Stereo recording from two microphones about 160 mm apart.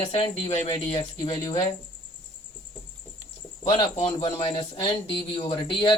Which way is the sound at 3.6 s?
35° left (ahead or behind).